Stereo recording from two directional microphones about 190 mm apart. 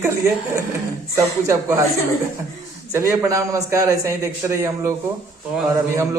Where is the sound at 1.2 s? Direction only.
15° right (ahead or behind).